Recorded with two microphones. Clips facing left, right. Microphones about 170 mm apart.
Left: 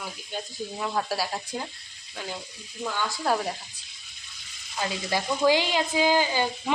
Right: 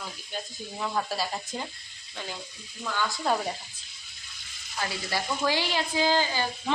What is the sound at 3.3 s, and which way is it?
Speech, 5° left (ahead or behind).